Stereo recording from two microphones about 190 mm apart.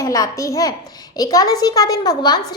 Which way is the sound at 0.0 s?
15° left (ahead or behind).